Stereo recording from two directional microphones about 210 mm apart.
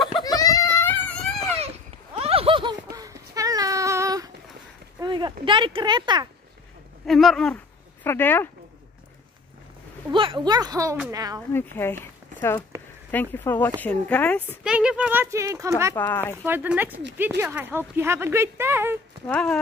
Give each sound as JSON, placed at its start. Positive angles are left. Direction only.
{"t": 0.2, "sound": "baby cry", "side_deg": 15}
{"t": 2.1, "sound": "a sound", "side_deg": -25}
{"t": 5.4, "sound": "speech", "side_deg": -25}
{"t": 7.1, "sound": "speech", "side_deg": 0}
{"t": 10.1, "sound": "speech", "side_deg": -25}
{"t": 11.5, "sound": "speech", "side_deg": 10}
{"t": 14.6, "sound": "speech", "side_deg": -5}
{"t": 15.9, "sound": "speech", "side_deg": 10}
{"t": 16.4, "sound": "speech", "side_deg": -10}
{"t": 19.2, "sound": "speech", "side_deg": 5}